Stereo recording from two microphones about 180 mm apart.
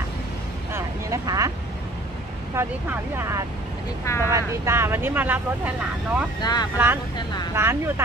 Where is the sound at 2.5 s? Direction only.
15° right (ahead or behind).